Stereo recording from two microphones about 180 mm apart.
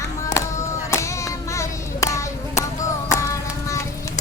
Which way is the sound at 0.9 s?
15° left (ahead or behind).